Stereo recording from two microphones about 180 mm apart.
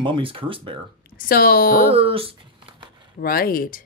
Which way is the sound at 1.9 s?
30° right (ahead or behind).